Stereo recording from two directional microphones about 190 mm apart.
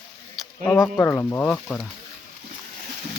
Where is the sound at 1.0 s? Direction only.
10° left (ahead or behind).